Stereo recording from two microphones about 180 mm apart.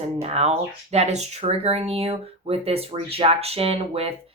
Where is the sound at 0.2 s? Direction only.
35° right (ahead or behind).